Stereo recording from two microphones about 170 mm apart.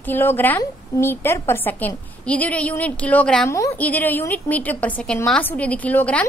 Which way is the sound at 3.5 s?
15° left (ahead or behind).